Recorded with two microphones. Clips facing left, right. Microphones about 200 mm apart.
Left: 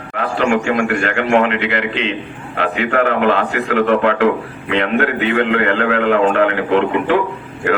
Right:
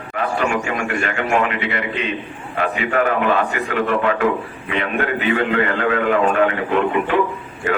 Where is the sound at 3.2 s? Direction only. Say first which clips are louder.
Left 3 dB; 70° left (ahead or behind).